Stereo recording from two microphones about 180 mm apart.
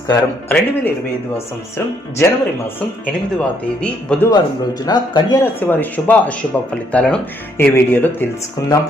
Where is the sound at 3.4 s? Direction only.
5° left (ahead or behind).